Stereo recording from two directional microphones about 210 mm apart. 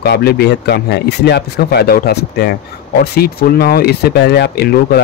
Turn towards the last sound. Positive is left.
turn(degrees=50)  # may be behind; listen again after turning